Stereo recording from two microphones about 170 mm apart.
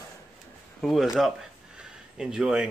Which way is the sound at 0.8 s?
Centre (ahead or behind).